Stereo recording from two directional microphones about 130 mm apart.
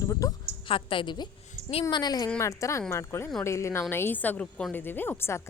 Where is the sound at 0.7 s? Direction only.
40° left (ahead or behind).